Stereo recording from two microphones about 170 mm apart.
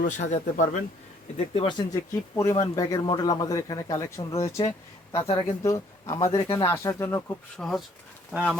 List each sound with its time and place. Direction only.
0.0 s speech: 50° left (ahead or behind)
1.5 s speech: 25° left (ahead or behind)
5.1 s speech: 30° left (ahead or behind)
5.6 s speech: 20° left (ahead or behind)
7.5 s speech: 5° left (ahead or behind)
8.3 s speech: 5° right (ahead or behind)